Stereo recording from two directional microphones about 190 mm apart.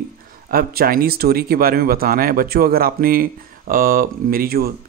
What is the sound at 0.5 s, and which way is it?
Speech, 50° right (ahead or behind).